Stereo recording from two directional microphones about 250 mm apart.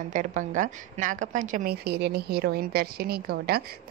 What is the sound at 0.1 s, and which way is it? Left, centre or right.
A woman's voice, right.